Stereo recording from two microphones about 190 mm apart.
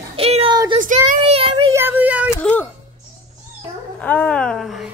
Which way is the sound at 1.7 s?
10° right (ahead or behind).